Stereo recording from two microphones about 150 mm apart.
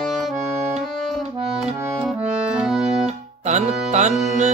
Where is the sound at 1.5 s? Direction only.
5° right (ahead or behind).